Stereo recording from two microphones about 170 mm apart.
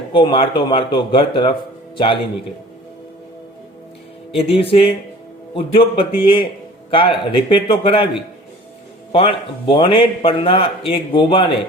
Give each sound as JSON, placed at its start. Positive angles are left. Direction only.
{"t": 0.1, "sound": "speech", "side_deg": 30}
{"t": 4.4, "sound": "a man's voice", "side_deg": 35}
{"t": 9.1, "sound": "a man's voice", "side_deg": 30}